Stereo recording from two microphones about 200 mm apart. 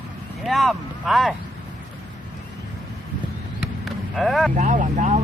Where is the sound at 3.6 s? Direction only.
Centre (ahead or behind).